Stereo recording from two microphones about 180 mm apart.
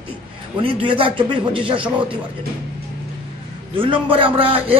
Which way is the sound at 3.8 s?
30° right (ahead or behind).